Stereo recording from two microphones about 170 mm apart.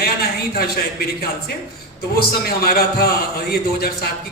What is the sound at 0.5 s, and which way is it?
Music, 65° left (ahead or behind).